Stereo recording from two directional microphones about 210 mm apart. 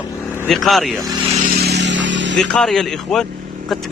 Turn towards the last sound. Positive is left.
turn(degrees=0)  # may be behind; listen again after turning